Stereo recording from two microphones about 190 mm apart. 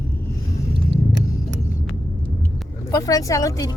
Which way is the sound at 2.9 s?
15° left (ahead or behind).